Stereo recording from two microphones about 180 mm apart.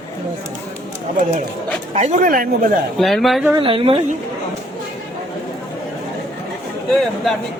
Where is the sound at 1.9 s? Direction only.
45° right (ahead or behind).